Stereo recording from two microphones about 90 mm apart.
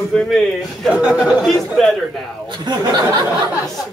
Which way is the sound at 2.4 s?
50° right (ahead or behind).